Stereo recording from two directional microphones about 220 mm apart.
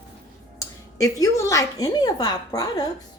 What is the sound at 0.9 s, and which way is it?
A woman's voice, 15° left (ahead or behind).